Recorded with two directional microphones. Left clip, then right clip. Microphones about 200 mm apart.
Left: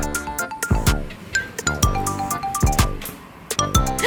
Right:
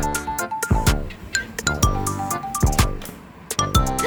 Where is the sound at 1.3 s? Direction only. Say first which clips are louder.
Left 2 dB; 55° right (ahead or behind).